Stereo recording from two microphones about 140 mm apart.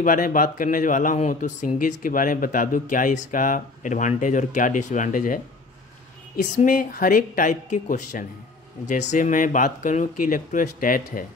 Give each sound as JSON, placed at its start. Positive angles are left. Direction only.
{"t": 0.0, "sound": "speech", "side_deg": 75}